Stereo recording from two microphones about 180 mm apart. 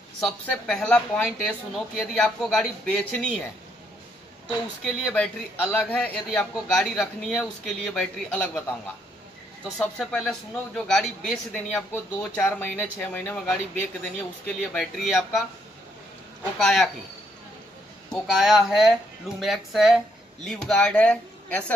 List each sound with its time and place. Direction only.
0.2 s a man's voice: 5° left (ahead or behind)
4.8 s a man's voice: 5° left (ahead or behind)
9.8 s a man's voice: 5° left (ahead or behind)
14.6 s a man's voice: 5° left (ahead or behind)
16.5 s a man's voice: centre (ahead or behind)
18.1 s a man's voice: centre (ahead or behind)